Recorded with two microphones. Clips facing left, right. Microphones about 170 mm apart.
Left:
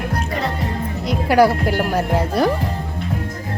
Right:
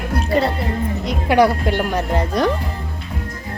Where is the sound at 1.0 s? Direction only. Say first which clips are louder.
Left 1 dB; centre (ahead or behind).